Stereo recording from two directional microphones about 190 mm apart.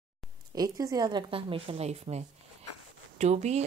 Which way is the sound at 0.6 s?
20° right (ahead or behind).